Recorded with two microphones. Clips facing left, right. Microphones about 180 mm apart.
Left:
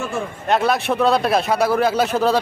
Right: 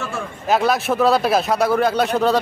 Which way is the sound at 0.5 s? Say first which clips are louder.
Right 1 dB; centre (ahead or behind).